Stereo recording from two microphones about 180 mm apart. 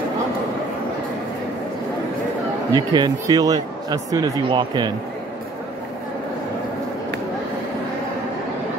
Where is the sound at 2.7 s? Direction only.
25° right (ahead or behind).